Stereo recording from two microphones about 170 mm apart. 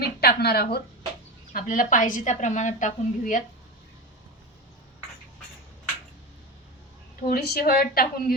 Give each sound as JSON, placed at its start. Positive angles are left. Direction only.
{"t": 0.0, "sound": "speech", "side_deg": 70}
{"t": 1.5, "sound": "a woman's voice", "side_deg": 55}
{"t": 7.2, "sound": "a woman's voice", "side_deg": 65}